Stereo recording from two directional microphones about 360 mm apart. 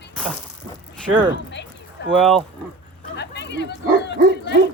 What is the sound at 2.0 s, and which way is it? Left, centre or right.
Speech, centre.